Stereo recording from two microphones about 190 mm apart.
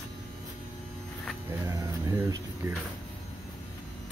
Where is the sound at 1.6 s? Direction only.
15° right (ahead or behind).